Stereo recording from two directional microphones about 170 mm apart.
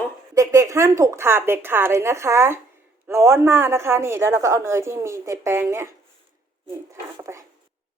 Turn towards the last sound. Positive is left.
turn(degrees=-15)  # may be behind; listen again after turning